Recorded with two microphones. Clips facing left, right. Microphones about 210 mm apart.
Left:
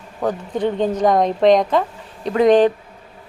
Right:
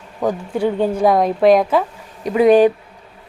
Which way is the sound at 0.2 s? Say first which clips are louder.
Right 2 dB; 10° right (ahead or behind).